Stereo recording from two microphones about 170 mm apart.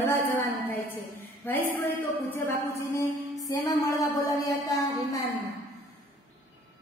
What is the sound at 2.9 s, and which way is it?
Music, 15° left (ahead or behind).